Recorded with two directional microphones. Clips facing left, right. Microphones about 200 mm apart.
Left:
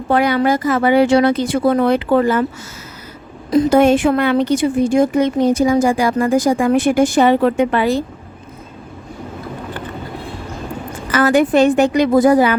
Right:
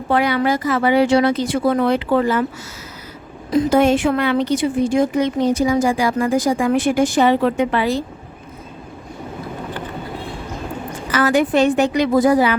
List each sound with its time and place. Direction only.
0.1 s a woman's voice: 45° left (ahead or behind)
3.5 s a woman's voice: 50° left (ahead or behind)
11.1 s a woman's voice: 50° left (ahead or behind)